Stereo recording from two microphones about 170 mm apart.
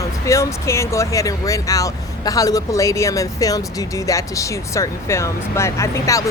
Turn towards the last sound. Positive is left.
turn(degrees=15)  # may be behind; listen again after turning